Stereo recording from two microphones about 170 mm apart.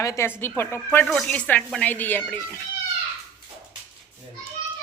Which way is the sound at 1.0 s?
Centre (ahead or behind).